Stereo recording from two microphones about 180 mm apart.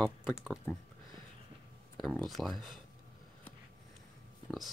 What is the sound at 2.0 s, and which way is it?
Speech, centre (ahead or behind).